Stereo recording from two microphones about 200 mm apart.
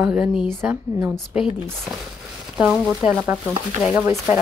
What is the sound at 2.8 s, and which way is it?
Speech, 5° right (ahead or behind).